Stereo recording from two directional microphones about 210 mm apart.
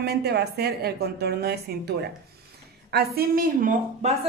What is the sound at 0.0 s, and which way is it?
A woman's voice, 50° right (ahead or behind).